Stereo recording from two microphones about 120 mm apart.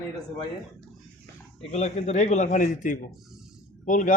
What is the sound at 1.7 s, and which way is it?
A man's voice, 70° left (ahead or behind).